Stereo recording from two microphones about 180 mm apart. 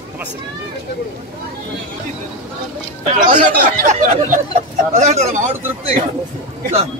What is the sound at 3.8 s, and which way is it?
Speech, 40° right (ahead or behind).